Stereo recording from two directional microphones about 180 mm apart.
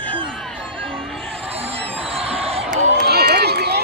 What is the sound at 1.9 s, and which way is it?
Music, 30° right (ahead or behind).